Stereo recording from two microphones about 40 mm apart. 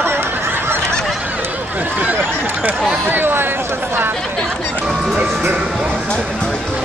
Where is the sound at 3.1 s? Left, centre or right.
Right.